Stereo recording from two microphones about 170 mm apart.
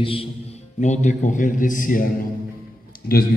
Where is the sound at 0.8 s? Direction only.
45° left (ahead or behind).